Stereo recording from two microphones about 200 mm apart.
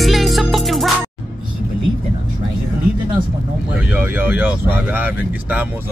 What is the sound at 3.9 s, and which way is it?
Speech, 10° right (ahead or behind).